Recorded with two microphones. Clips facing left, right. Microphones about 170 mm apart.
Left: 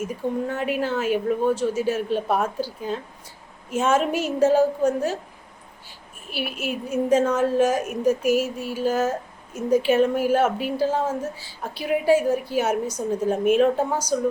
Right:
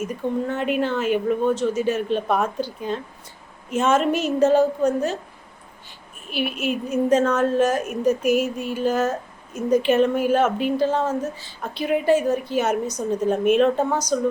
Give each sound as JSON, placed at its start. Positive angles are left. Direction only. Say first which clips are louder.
{"t": 0.1, "sound": "a woman's voice", "louder": "right 1 dB", "side_deg": 10}
{"t": 6.3, "sound": "a woman's voice", "louder": "right 4 dB", "side_deg": 5}